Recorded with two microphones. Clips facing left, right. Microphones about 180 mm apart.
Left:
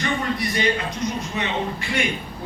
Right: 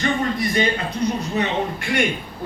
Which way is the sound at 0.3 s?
50° right (ahead or behind).